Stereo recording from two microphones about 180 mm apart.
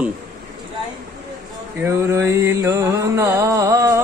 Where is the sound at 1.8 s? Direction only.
15° right (ahead or behind).